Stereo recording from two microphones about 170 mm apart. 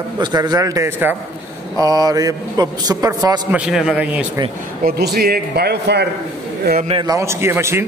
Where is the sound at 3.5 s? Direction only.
5° right (ahead or behind).